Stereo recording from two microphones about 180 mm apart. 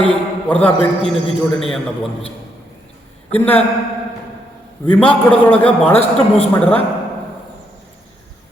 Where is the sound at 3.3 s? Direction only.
10° left (ahead or behind).